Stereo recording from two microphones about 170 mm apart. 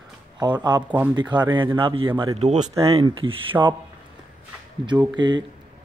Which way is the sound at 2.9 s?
30° right (ahead or behind).